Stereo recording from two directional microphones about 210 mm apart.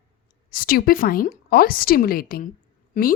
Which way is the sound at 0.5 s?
45° left (ahead or behind).